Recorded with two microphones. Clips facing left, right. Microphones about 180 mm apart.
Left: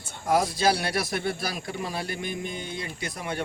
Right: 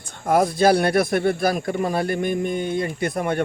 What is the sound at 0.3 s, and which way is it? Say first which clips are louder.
Speech: right 6 dB; 55° right (ahead or behind).